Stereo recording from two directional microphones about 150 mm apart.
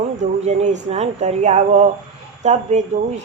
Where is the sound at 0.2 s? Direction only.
50° right (ahead or behind).